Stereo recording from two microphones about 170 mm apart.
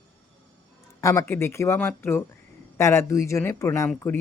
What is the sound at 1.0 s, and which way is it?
A woman's voice, 15° left (ahead or behind).